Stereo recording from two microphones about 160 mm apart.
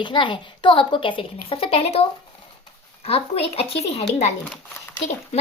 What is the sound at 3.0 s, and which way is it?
Speech, 40° left (ahead or behind).